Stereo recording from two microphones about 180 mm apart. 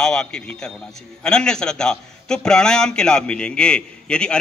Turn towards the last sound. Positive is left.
turn(degrees=5)  # may be behind; listen again after turning